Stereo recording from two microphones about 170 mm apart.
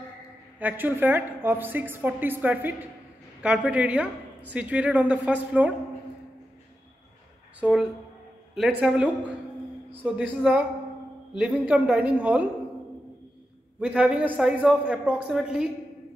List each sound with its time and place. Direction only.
0.6 s a woman's voice: 10° right (ahead or behind)
7.6 s a woman's voice: 10° right (ahead or behind)
13.7 s a woman's voice: 5° right (ahead or behind)